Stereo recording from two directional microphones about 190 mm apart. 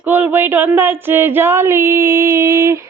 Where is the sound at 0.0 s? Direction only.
10° right (ahead or behind).